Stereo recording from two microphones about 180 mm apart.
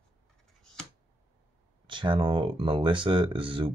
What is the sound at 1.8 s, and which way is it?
Speech, 25° right (ahead or behind).